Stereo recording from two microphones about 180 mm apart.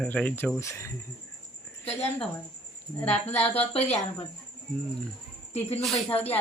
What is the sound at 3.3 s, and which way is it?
Speech, 35° left (ahead or behind).